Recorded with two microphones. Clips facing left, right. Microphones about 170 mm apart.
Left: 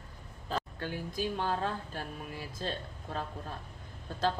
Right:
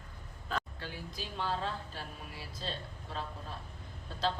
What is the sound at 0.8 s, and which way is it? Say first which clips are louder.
Speech: left 8 dB; 50° left (ahead or behind).